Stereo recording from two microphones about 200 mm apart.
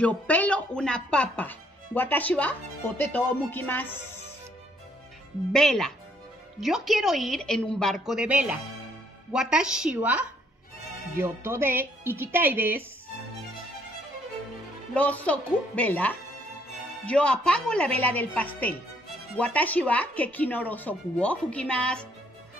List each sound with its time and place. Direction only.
0.0 s a woman's voice: 5° left (ahead or behind)
5.5 s a woman's voice: centre (ahead or behind)
15.0 s a woman's voice: 5° left (ahead or behind)